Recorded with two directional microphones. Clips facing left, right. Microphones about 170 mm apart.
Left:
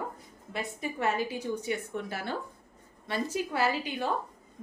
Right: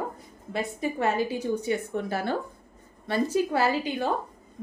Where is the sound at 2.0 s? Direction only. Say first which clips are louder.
Right 6 dB; 40° right (ahead or behind).